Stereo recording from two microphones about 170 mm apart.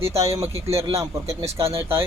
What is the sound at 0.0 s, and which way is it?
Speech, 15° right (ahead or behind).